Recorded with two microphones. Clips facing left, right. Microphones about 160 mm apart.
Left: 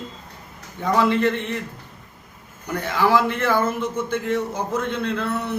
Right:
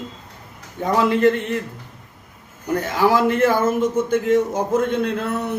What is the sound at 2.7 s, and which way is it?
A man's voice, 40° right (ahead or behind).